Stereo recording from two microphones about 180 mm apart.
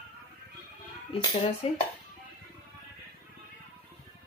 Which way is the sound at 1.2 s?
30° left (ahead or behind).